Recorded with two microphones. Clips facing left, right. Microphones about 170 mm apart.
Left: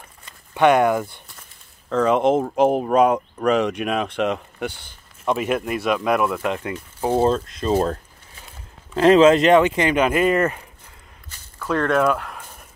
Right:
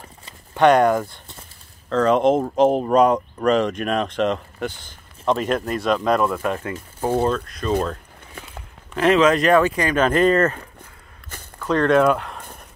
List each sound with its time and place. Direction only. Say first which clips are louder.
0.6 s speech: right 1 dB; 10° left (ahead or behind)
10.0 s speech: right 2 dB; 10° left (ahead or behind)
11.7 s speech: right 3 dB; 5° left (ahead or behind)